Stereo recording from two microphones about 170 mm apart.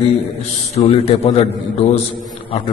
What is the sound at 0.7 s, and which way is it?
Speech, 40° left (ahead or behind).